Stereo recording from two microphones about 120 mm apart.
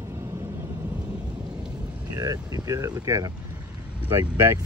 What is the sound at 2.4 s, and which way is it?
Speech, 30° right (ahead or behind).